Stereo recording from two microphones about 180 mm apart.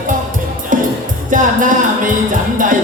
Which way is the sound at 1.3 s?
45° right (ahead or behind).